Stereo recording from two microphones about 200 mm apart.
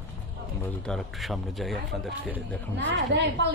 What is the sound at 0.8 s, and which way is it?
Speech, centre (ahead or behind).